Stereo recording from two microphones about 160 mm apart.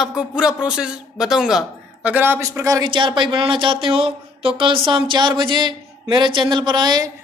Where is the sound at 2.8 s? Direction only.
30° right (ahead or behind).